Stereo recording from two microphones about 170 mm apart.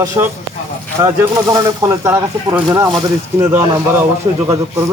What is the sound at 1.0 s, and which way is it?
A man's voice, 20° right (ahead or behind).